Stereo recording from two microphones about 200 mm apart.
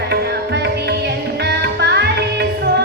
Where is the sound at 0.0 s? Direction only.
55° right (ahead or behind).